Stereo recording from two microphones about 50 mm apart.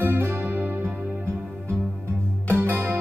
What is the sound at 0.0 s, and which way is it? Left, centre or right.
Music, right.